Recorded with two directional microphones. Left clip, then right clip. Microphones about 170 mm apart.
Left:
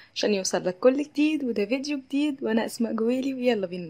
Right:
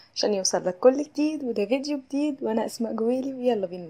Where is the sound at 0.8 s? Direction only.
10° left (ahead or behind).